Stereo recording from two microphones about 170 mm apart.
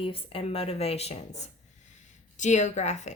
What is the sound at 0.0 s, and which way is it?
Speech, 35° left (ahead or behind).